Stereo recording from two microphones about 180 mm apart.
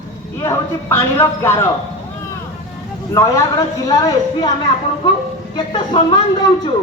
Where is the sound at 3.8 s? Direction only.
20° left (ahead or behind).